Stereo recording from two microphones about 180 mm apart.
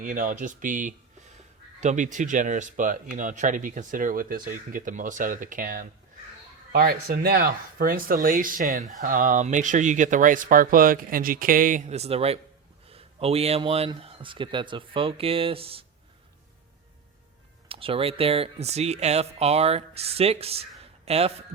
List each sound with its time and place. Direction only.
0.0 s speech: 45° right (ahead or behind); by 15.8 s 30° right (ahead or behind)
17.7 s speech: 30° right (ahead or behind)